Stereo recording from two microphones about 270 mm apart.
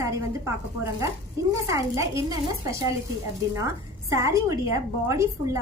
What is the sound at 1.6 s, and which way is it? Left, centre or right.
A woman's voice, centre.